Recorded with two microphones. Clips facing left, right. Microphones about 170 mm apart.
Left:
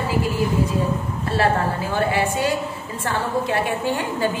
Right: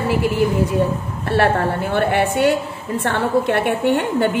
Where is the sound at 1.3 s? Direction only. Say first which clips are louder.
Right 4 dB; 65° right (ahead or behind).